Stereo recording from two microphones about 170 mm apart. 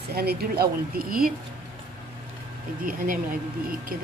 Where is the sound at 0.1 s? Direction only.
65° right (ahead or behind).